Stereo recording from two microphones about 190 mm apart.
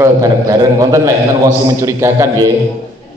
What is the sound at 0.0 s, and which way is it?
A man's voice, 15° right (ahead or behind).